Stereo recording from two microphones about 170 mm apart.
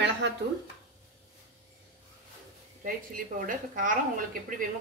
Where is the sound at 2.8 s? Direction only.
55° right (ahead or behind).